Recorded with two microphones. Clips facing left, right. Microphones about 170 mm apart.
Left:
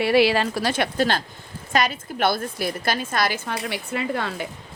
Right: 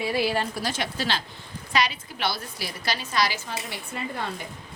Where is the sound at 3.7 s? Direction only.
85° left.